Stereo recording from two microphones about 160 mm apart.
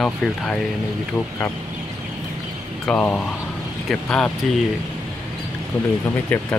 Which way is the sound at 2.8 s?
5° left (ahead or behind).